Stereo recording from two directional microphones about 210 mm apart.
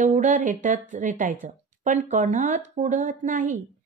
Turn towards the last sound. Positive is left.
turn(degrees=-40)  # may be behind; listen again after turning